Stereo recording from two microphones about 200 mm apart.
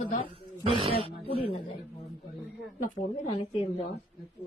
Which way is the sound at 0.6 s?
30° right (ahead or behind).